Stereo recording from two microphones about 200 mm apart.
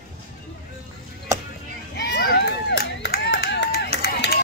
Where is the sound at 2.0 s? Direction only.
55° left (ahead or behind).